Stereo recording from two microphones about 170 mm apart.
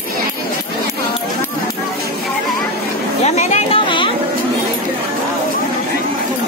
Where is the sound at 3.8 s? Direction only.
30° left (ahead or behind).